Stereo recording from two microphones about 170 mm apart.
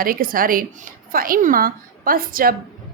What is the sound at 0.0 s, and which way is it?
A woman's voice, 60° right (ahead or behind).